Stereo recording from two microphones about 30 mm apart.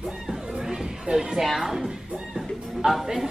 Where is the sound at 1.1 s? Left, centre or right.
Right.